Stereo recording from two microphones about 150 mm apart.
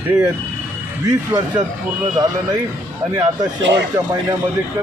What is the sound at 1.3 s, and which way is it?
Speech, 25° right (ahead or behind).